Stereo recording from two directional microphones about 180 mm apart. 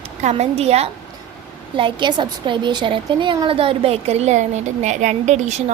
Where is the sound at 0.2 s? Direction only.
40° right (ahead or behind).